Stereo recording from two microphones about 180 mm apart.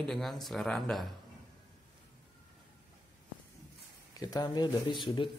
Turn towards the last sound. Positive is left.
turn(degrees=25)  # may be behind; listen again after turning